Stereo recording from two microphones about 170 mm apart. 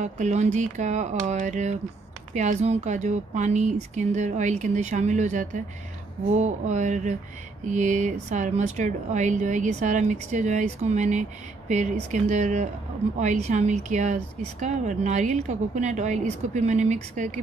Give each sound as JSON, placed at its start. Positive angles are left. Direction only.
{"t": 0.0, "sound": "speech", "side_deg": -45}